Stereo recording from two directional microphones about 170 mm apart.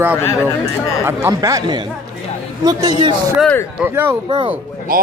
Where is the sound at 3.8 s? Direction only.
15° right (ahead or behind).